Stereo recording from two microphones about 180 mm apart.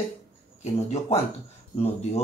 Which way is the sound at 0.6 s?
40° left (ahead or behind).